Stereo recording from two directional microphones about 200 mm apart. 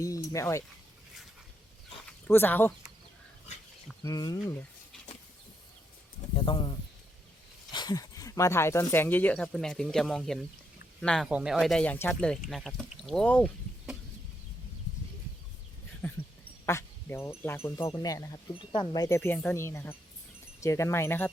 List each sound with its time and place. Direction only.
0.0 s speech: 15° left (ahead or behind)
2.0 s speech: 10° left (ahead or behind)
4.0 s speech: 20° left (ahead or behind)
6.3 s speech: 25° left (ahead or behind); by 13.5 s 5° left (ahead or behind)
16.0 s speech: 10° left (ahead or behind)